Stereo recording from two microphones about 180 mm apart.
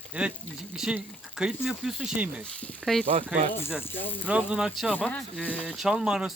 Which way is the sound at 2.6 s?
5° left (ahead or behind).